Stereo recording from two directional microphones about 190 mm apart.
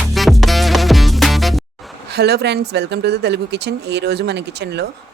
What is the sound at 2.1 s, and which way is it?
Speech, 60° right (ahead or behind).